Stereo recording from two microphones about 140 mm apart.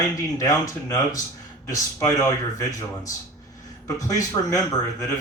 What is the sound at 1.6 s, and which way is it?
A man's voice, 25° left (ahead or behind).